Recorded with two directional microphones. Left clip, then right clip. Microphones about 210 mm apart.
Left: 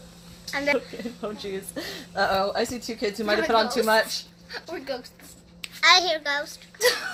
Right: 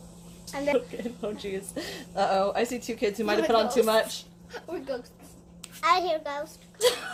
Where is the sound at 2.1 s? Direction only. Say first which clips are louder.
Left 1 dB; 15° left (ahead or behind).